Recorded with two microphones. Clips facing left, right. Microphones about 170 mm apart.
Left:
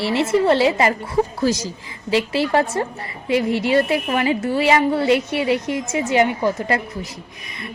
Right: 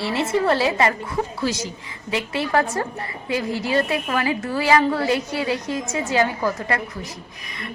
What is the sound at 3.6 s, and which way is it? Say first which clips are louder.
A woman's voice: left 4 dB; 25° left (ahead or behind).